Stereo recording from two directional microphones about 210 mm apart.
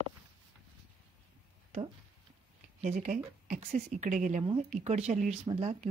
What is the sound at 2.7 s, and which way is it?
Speech, 30° right (ahead or behind).